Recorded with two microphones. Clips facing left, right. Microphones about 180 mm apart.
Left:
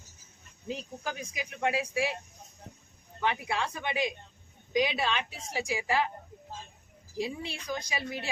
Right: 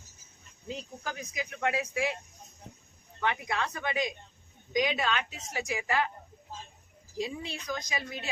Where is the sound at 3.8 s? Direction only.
25° left (ahead or behind).